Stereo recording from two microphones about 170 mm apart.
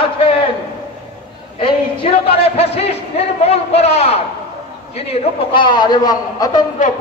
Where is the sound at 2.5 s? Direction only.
35° left (ahead or behind).